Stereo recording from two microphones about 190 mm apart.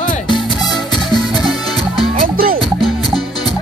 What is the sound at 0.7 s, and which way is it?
Music, 20° left (ahead or behind).